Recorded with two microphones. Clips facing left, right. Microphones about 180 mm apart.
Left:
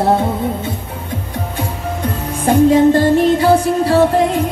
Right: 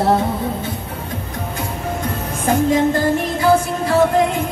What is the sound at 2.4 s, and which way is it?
Music, 30° left (ahead or behind).